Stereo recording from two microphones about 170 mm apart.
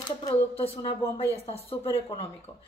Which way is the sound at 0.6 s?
35° left (ahead or behind).